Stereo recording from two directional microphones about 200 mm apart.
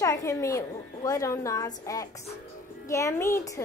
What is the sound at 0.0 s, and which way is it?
A woman's voice, 15° left (ahead or behind).